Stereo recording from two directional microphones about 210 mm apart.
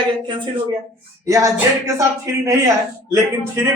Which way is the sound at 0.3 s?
20° right (ahead or behind).